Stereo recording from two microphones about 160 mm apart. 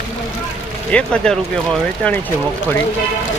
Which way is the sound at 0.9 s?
5° left (ahead or behind).